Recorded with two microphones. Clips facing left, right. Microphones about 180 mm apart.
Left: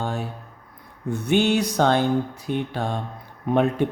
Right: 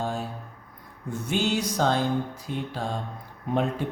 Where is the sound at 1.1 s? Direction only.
65° left (ahead or behind).